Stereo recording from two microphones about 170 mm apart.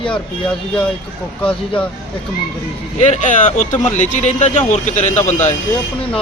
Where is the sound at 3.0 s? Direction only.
45° left (ahead or behind).